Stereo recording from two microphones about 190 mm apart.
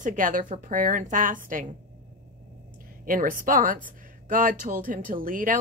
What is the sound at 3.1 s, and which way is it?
Speech, 45° right (ahead or behind).